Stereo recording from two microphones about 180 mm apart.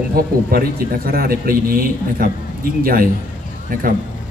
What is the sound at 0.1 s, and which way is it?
A man's voice, 55° right (ahead or behind).